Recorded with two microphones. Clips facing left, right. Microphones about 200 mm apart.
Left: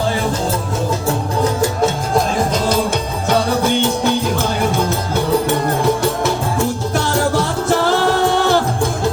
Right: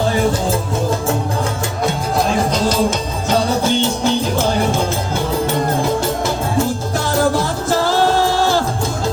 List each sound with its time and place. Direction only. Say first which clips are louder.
3.2 s music: even; 55° left (ahead or behind)
7.3 s music: left 1 dB; 65° left (ahead or behind)